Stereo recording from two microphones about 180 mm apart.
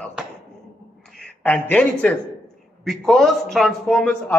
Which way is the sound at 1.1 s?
5° left (ahead or behind).